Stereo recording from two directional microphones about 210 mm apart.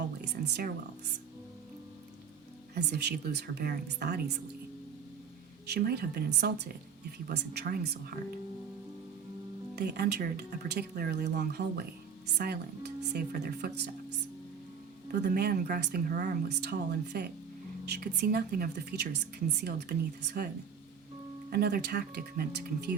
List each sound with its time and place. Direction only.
2.7 s speech: 50° right (ahead or behind)
5.6 s speech: 50° right (ahead or behind)
9.7 s speech: 50° right (ahead or behind)
15.2 s speech: 50° right (ahead or behind)
21.5 s speech: 50° right (ahead or behind)